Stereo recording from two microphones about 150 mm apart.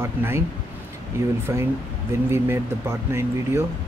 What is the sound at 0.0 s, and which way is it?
Speech, 15° right (ahead or behind).